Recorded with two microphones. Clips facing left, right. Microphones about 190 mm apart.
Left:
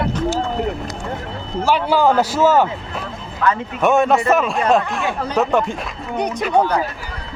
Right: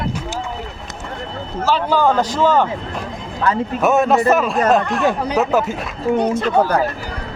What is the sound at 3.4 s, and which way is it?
Speech, 30° right (ahead or behind).